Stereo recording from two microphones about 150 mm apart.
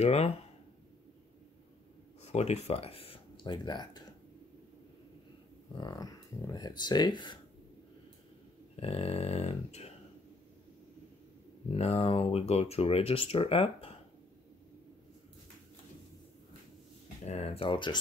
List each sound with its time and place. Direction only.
0.0 s speech: 45° left (ahead or behind)
2.2 s speech: 45° left (ahead or behind); by 4.1 s 25° left (ahead or behind)
5.8 s speech: 25° left (ahead or behind)
8.7 s speech: 40° left (ahead or behind)
11.7 s speech: 40° left (ahead or behind)
17.2 s speech: 45° left (ahead or behind)